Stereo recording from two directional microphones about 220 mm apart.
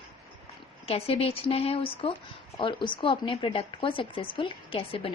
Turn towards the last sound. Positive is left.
turn(degrees=25)  # may be behind; listen again after turning